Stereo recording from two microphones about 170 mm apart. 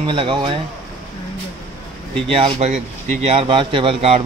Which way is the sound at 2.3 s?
35° right (ahead or behind).